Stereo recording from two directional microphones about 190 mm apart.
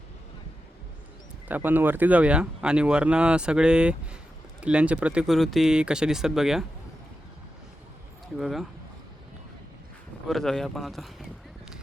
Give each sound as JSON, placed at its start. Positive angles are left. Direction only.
{"t": 1.5, "sound": "speech", "side_deg": -10}
{"t": 8.4, "sound": "speech", "side_deg": 0}
{"t": 10.2, "sound": "speech", "side_deg": 0}